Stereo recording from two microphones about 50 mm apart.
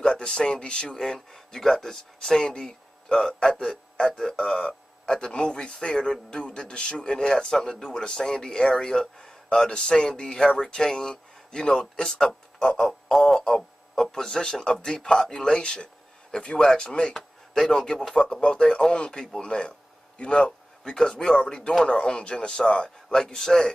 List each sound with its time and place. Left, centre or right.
0.0 s a man's voice: centre
17.1 s a sound: centre
17.7 s a man's voice: centre